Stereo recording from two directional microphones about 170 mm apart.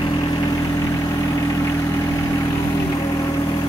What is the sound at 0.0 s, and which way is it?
Vehicle, 20° left (ahead or behind).